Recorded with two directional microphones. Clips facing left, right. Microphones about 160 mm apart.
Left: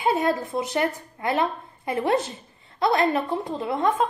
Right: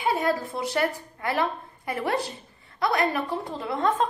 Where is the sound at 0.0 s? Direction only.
20° left (ahead or behind).